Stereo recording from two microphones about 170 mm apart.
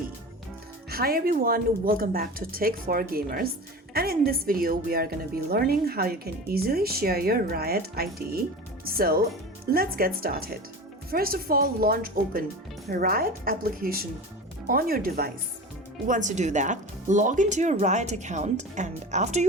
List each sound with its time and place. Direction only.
0.9 s speech: 60° right (ahead or behind)
3.9 s music: 60° right (ahead or behind)
4.3 s speech: 60° right (ahead or behind)
16.0 s speech: 50° right (ahead or behind)